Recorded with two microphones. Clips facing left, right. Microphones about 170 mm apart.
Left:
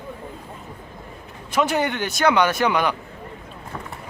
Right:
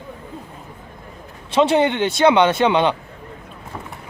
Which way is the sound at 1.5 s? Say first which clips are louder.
Right 6 dB; 25° right (ahead or behind).